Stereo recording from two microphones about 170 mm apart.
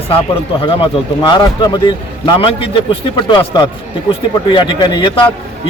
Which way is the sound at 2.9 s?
25° left (ahead or behind).